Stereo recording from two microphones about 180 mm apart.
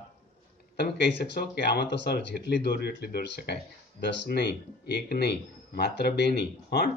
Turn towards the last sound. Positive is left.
turn(degrees=65)  # may be behind; listen again after turning